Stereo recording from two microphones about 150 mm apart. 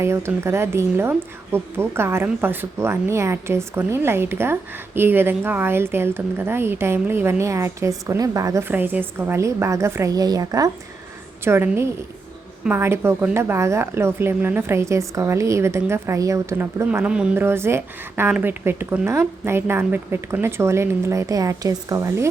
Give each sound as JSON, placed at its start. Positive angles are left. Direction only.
{"t": 0.0, "sound": "a woman's voice", "side_deg": -15}